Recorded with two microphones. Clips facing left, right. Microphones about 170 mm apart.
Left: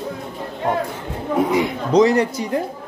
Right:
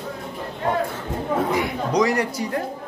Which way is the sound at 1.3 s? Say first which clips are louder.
Left 4 dB; 20° left (ahead or behind).